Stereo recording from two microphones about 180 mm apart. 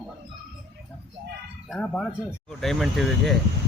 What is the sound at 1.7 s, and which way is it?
Speech, 5° left (ahead or behind).